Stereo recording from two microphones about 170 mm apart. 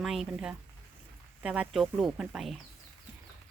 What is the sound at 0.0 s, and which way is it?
Speech, centre (ahead or behind).